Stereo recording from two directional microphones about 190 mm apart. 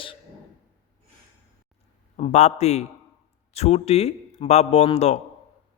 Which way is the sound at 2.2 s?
35° left (ahead or behind).